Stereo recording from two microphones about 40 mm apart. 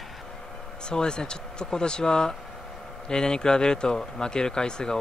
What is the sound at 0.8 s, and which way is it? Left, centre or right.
Speech, left.